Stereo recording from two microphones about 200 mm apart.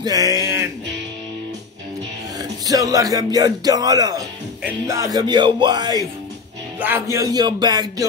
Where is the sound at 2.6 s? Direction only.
15° right (ahead or behind).